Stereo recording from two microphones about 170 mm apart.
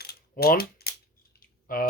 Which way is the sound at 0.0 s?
70° left (ahead or behind).